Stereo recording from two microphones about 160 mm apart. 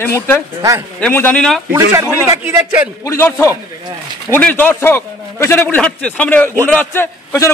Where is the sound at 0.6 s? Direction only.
15° right (ahead or behind).